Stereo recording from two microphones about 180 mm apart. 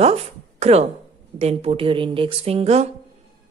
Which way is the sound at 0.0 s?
35° right (ahead or behind).